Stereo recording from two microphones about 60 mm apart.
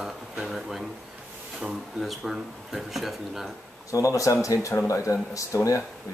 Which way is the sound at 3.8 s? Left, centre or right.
Left.